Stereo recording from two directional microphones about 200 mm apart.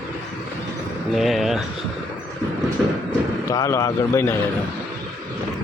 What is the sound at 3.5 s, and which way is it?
Speech, 15° left (ahead or behind).